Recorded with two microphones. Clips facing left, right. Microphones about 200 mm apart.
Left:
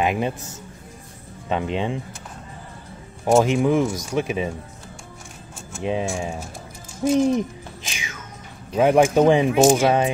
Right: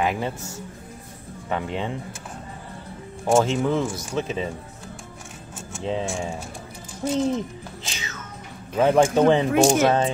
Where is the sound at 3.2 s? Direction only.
10° left (ahead or behind).